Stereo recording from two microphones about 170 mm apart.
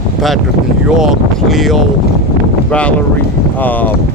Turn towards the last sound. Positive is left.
turn(degrees=10)  # may be behind; listen again after turning